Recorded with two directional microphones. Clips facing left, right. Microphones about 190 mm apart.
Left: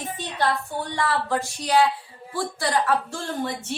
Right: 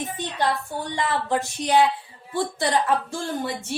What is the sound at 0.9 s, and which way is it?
A woman's voice, 20° right (ahead or behind).